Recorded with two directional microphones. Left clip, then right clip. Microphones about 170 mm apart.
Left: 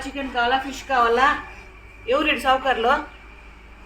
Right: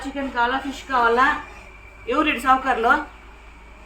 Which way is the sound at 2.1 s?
25° right (ahead or behind).